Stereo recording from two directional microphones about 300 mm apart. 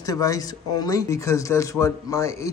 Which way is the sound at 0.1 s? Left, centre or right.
Centre.